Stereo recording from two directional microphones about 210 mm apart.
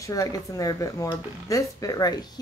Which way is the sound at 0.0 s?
15° left (ahead or behind).